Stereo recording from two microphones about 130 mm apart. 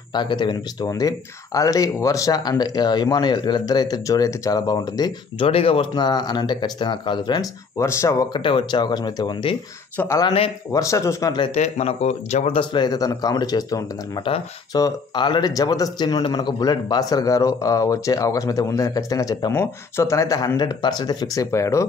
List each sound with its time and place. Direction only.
0.1 s speech: 35° left (ahead or behind)
5.5 s speech: 45° left (ahead or behind)
7.8 s speech: 20° left (ahead or behind)
8.4 s speech: 40° left (ahead or behind)
9.9 s speech: 20° left (ahead or behind)
11.5 s speech: 55° left (ahead or behind)
12.5 s speech: 35° left (ahead or behind)